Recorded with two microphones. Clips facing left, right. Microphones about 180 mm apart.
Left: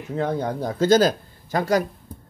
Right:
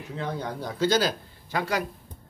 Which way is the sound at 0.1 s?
45° left (ahead or behind).